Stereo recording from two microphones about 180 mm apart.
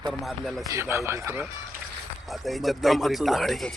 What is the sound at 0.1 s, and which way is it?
Speech, centre (ahead or behind).